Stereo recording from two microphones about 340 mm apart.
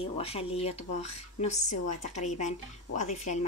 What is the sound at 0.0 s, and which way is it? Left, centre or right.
Speech, centre.